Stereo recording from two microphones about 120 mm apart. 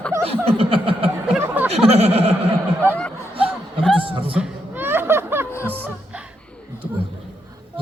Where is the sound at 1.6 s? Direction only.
55° right (ahead or behind).